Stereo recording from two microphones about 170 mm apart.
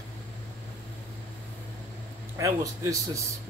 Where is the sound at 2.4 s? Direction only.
20° right (ahead or behind).